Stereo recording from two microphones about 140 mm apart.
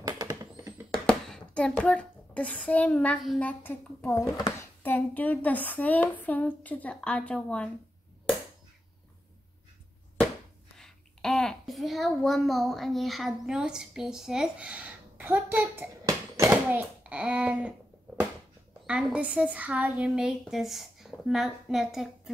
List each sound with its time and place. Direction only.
0.0 s rodents: 25° right (ahead or behind)
0.9 s a sound: 5° left (ahead or behind)
3.3 s speech: 10° left (ahead or behind)
10.8 s a child's voice: 5° left (ahead or behind)
18.9 s a woman's voice: 5° right (ahead or behind)